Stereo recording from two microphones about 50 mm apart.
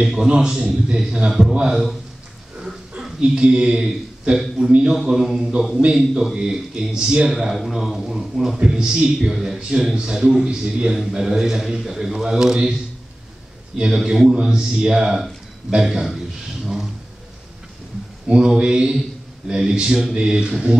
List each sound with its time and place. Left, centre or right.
0.0 s a man's voice: centre
3.0 s a man's voice: centre
7.7 s a man's voice: centre
11.0 s a man's voice: centre
13.7 s a man's voice: centre
16.6 s vehicle: centre
18.3 s a man's voice: right